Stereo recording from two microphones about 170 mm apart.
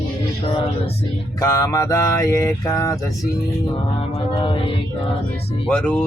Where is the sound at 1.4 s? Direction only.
20° left (ahead or behind).